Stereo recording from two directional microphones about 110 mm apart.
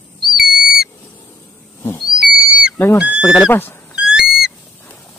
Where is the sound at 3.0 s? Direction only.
10° right (ahead or behind).